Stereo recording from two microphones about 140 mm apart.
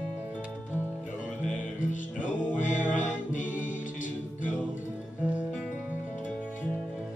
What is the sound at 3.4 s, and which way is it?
Music, 10° right (ahead or behind).